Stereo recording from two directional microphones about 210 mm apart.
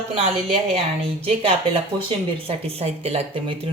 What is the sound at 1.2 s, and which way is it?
Speech, 25° right (ahead or behind).